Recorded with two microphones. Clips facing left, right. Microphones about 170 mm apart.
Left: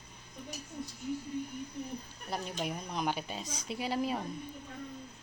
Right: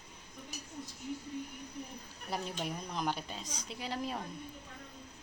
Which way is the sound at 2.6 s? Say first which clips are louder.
Left 4 dB; 5° left (ahead or behind).